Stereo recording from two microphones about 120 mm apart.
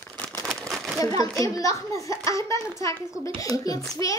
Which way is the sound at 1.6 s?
25° left (ahead or behind).